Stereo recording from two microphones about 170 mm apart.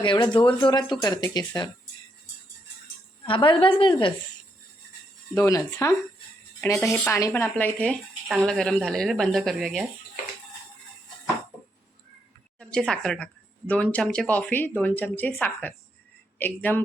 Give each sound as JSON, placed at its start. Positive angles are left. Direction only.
{"t": 0.0, "sound": "speech", "side_deg": 30}
{"t": 3.2, "sound": "speech", "side_deg": 30}
{"t": 5.3, "sound": "speech", "side_deg": 20}
{"t": 6.9, "sound": "a woman's voice", "side_deg": 15}
{"t": 12.5, "sound": "speech", "side_deg": 5}